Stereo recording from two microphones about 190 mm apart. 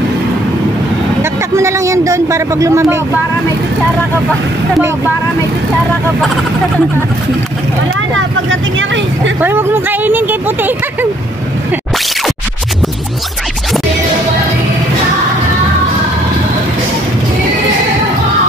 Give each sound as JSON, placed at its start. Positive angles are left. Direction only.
{"t": 1.2, "sound": "a sound", "side_deg": -15}
{"t": 8.5, "sound": "speech", "side_deg": -80}
{"t": 9.4, "sound": "speech", "side_deg": -10}